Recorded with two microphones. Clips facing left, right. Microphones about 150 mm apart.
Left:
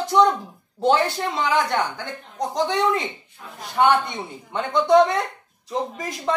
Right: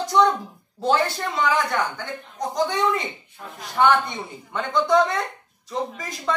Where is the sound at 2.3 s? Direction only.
30° left (ahead or behind).